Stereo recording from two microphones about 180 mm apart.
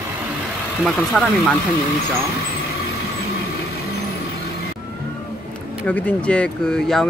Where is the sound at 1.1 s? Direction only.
Centre (ahead or behind).